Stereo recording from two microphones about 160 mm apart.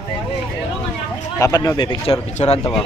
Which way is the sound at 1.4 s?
20° left (ahead or behind).